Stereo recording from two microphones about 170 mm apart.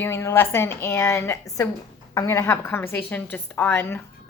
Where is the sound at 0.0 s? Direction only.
15° left (ahead or behind).